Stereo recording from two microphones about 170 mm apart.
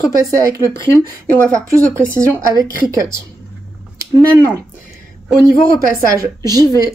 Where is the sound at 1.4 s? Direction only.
20° right (ahead or behind).